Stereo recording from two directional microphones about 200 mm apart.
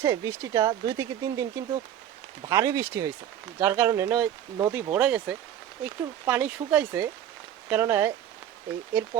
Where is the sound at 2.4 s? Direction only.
20° right (ahead or behind).